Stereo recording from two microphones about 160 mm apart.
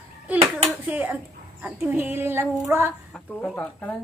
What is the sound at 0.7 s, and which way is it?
A woman's voice, 10° right (ahead or behind).